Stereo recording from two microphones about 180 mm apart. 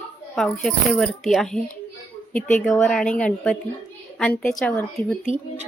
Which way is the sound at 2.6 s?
Centre (ahead or behind).